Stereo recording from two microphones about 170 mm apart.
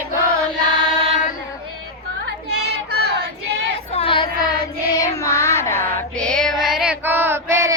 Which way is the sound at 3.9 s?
35° left (ahead or behind).